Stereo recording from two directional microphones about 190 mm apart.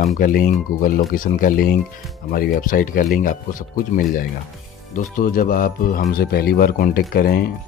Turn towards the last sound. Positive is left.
turn(degrees=50)  # may be behind; listen again after turning